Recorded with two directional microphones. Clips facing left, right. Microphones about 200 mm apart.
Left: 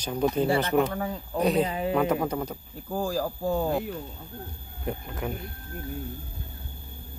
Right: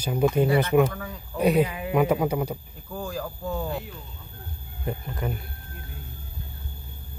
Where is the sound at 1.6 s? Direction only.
30° left (ahead or behind).